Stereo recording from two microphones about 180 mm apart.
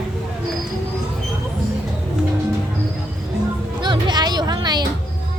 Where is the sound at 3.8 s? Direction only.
25° right (ahead or behind).